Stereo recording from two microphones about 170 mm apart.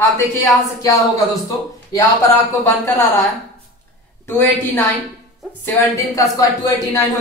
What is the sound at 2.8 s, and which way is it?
Speech, 20° left (ahead or behind).